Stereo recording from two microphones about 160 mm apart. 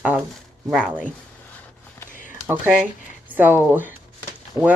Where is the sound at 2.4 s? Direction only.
10° right (ahead or behind).